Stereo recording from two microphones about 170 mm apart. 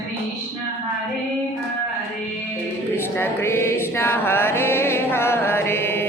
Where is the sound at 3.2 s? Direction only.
15° left (ahead or behind).